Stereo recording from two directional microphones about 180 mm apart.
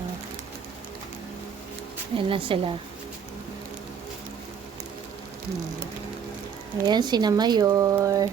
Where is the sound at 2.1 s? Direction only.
30° right (ahead or behind).